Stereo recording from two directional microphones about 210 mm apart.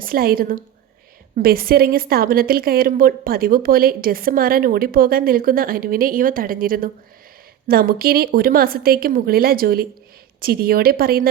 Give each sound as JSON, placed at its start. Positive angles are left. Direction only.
{"t": 0.0, "sound": "a woman's voice", "side_deg": -45}